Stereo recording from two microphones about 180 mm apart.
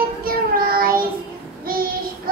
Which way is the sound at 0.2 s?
55° right (ahead or behind).